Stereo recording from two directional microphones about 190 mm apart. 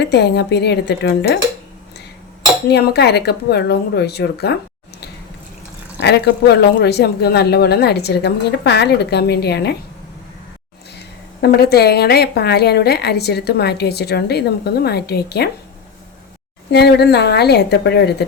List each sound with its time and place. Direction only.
0.0 s a woman's voice: 60° left (ahead or behind)
2.7 s a woman's voice: 60° left (ahead or behind)
6.0 s a woman's voice: 65° left (ahead or behind)
11.3 s a woman's voice: 55° left (ahead or behind)
16.7 s a woman's voice: 60° left (ahead or behind)